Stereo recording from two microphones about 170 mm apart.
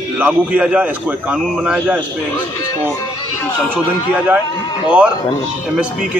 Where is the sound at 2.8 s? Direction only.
15° left (ahead or behind).